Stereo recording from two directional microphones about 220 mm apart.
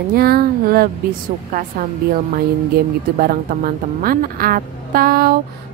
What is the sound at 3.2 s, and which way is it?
A woman's voice, 40° right (ahead or behind).